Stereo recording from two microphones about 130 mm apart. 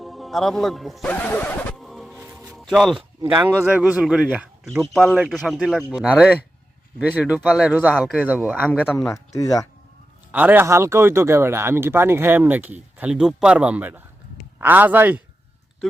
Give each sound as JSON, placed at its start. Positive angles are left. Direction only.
{"t": 0.0, "sound": "speech", "side_deg": 0}
{"t": 1.0, "sound": "a sound", "side_deg": 10}
{"t": 1.7, "sound": "music", "side_deg": 0}
{"t": 2.1, "sound": "music", "side_deg": -15}
{"t": 2.5, "sound": "music", "side_deg": 0}
{"t": 3.2, "sound": "speech", "side_deg": -15}
{"t": 9.1, "sound": "speech", "side_deg": 25}
{"t": 10.3, "sound": "speech", "side_deg": -15}
{"t": 15.8, "sound": "speech", "side_deg": 5}